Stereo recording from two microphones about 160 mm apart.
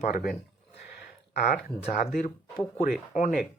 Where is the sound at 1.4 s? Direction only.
60° left (ahead or behind).